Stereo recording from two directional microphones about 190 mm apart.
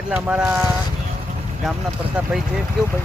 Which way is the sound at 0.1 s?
5° right (ahead or behind).